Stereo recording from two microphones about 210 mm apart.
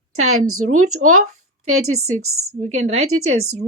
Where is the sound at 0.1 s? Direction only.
90° right.